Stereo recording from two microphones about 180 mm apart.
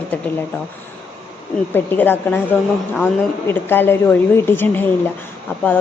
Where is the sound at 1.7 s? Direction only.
10° left (ahead or behind).